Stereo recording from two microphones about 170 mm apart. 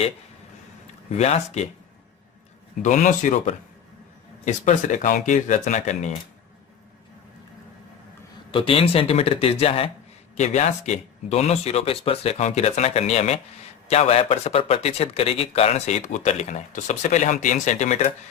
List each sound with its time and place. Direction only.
1.1 s speech: 40° left (ahead or behind)
2.8 s speech: 45° left (ahead or behind)
8.5 s speech: 35° left (ahead or behind)